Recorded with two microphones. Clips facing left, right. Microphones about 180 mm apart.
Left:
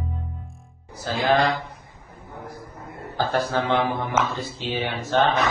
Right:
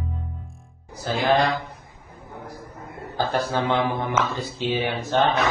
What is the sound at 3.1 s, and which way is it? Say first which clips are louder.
Speech: left 1 dB; 15° right (ahead or behind).